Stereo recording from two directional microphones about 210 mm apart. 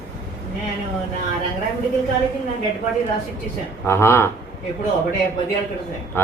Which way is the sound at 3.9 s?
10° left (ahead or behind).